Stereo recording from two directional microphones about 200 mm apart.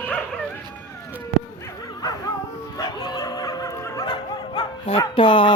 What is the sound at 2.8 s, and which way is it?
Bow-wow, 20° left (ahead or behind).